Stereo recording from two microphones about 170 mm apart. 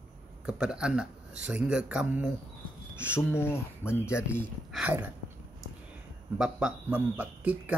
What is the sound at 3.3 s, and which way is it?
Speech, 15° left (ahead or behind).